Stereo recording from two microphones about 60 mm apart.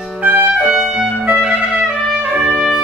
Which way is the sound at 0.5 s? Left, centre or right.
Centre.